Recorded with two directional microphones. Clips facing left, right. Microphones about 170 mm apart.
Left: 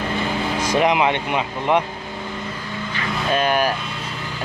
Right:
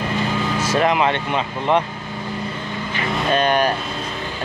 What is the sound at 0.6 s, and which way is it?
Speech, 15° left (ahead or behind).